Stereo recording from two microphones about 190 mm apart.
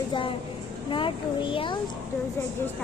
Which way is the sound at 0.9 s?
25° left (ahead or behind).